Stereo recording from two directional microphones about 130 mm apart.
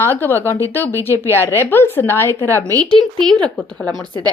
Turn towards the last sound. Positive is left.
turn(degrees=5)  # may be behind; listen again after turning